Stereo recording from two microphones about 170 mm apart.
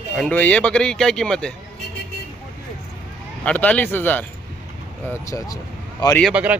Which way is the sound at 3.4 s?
10° left (ahead or behind).